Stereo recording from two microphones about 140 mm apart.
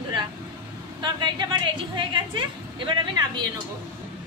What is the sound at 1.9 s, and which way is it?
Speech, 35° right (ahead or behind).